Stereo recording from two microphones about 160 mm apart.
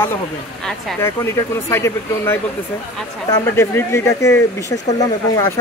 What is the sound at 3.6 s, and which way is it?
Speech, 15° left (ahead or behind).